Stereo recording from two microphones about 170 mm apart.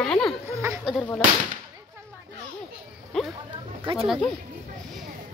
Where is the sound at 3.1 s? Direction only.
Centre (ahead or behind).